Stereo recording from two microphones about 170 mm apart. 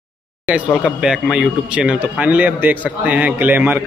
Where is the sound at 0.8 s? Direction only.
5° right (ahead or behind).